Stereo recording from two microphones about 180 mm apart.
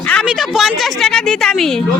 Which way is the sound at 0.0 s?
5° left (ahead or behind).